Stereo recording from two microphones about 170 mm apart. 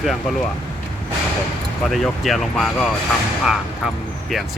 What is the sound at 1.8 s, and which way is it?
Speech, centre (ahead or behind).